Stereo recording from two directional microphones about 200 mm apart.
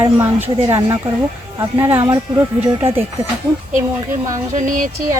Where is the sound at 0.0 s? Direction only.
10° right (ahead or behind).